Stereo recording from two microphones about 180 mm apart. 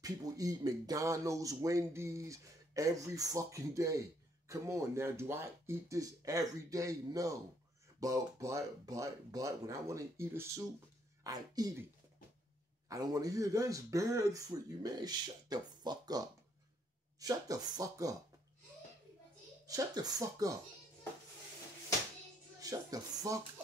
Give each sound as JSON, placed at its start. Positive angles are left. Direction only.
{"t": 0.0, "sound": "speech", "side_deg": -20}
{"t": 12.8, "sound": "speech", "side_deg": -20}
{"t": 19.6, "sound": "speech", "side_deg": -20}
{"t": 22.6, "sound": "speech", "side_deg": -20}